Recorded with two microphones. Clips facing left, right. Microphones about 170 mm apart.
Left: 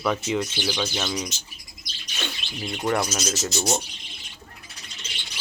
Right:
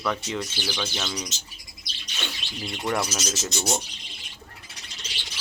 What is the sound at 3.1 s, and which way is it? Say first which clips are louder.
Speech: left 3 dB; 10° left (ahead or behind).